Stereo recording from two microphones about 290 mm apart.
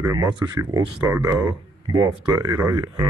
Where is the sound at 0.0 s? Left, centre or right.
Centre.